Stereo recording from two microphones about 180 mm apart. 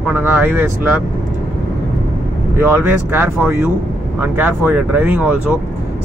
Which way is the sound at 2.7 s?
10° right (ahead or behind).